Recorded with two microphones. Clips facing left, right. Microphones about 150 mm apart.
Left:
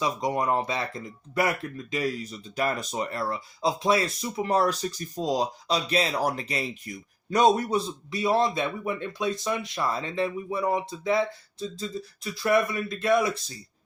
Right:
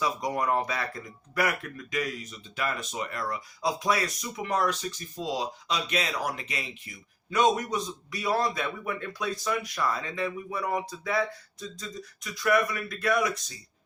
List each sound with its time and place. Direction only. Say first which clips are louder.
0.0 s speech: left 2 dB; 20° left (ahead or behind)